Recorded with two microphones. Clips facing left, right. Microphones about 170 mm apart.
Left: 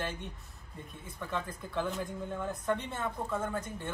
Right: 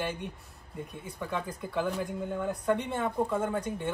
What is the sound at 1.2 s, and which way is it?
Speech, 10° right (ahead or behind).